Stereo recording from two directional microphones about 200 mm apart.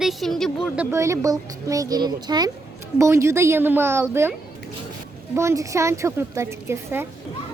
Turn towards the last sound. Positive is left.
turn(degrees=-10)  # may be behind; listen again after turning